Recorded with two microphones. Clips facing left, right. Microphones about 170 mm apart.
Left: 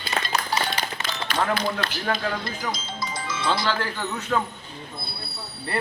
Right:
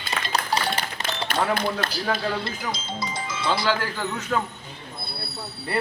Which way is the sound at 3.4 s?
10° right (ahead or behind).